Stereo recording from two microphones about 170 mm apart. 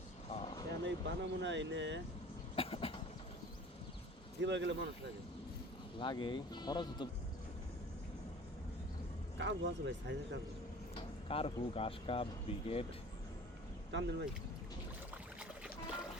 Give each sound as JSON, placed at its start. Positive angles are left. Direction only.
{"t": 0.3, "sound": "a sound", "side_deg": 35}
{"t": 0.9, "sound": "speech", "side_deg": -90}
{"t": 2.6, "sound": "cough", "side_deg": 35}
{"t": 4.4, "sound": "speech", "side_deg": -90}
{"t": 6.0, "sound": "speech", "side_deg": 25}
{"t": 9.4, "sound": "speech", "side_deg": -90}
{"t": 11.3, "sound": "speech", "side_deg": 35}
{"t": 13.9, "sound": "speech", "side_deg": -90}
{"t": 15.1, "sound": "rowboat", "side_deg": -5}